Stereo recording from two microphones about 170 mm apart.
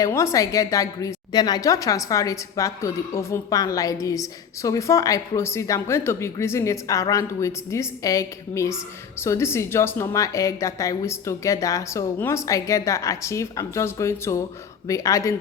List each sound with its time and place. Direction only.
0.0 s a woman's voice: 15° left (ahead or behind)